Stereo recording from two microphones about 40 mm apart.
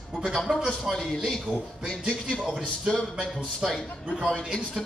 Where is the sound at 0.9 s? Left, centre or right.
Centre.